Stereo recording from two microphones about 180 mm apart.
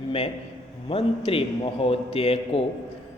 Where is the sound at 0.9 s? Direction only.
30° left (ahead or behind).